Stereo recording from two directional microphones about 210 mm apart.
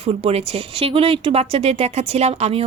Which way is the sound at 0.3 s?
25° right (ahead or behind).